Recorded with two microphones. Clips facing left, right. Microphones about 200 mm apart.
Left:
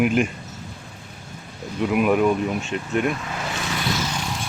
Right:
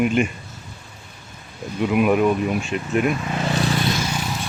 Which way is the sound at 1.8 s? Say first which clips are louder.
Right 1 dB; centre (ahead or behind).